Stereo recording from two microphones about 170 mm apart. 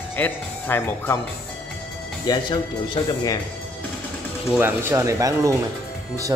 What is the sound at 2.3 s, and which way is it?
Speech, 25° left (ahead or behind).